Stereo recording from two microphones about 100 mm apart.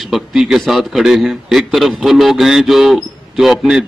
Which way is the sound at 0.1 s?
5° right (ahead or behind).